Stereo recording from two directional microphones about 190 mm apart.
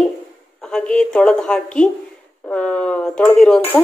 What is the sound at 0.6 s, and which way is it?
A woman's voice, 5° left (ahead or behind).